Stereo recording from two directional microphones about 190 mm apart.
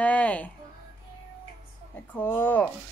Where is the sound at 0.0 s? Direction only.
5° left (ahead or behind).